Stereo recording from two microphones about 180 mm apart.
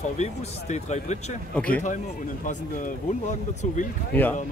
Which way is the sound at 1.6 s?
5° left (ahead or behind).